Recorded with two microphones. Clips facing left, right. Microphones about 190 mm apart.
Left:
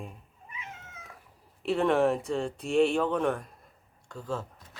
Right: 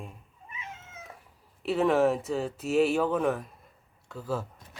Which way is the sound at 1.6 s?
Centre (ahead or behind).